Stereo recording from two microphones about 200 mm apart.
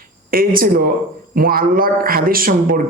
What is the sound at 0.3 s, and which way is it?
A man's voice, 45° right (ahead or behind).